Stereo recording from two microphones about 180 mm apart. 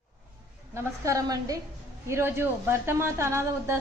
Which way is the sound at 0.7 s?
15° right (ahead or behind).